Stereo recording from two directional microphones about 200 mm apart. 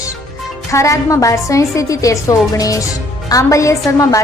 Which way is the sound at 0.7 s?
15° left (ahead or behind).